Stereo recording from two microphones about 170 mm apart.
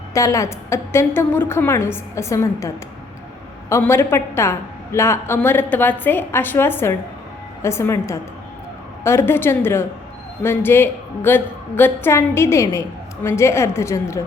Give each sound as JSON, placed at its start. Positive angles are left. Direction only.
{"t": 0.1, "sound": "a woman's voice", "side_deg": 20}